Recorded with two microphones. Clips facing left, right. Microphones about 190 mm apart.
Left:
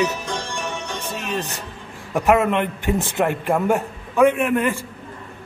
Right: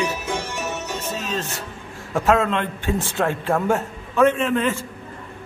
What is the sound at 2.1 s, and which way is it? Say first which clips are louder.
A man's voice: left 2 dB; 15° left (ahead or behind).